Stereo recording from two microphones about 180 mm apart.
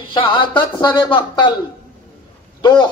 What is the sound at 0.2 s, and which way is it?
Speech, 25° left (ahead or behind).